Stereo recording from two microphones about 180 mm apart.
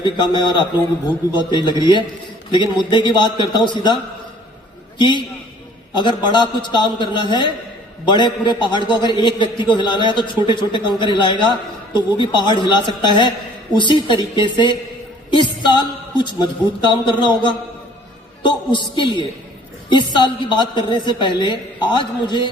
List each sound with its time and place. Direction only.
0.0 s a man's voice: 25° left (ahead or behind)